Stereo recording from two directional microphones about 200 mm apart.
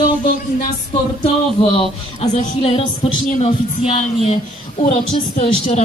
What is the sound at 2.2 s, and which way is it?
A woman's voice, 35° left (ahead or behind).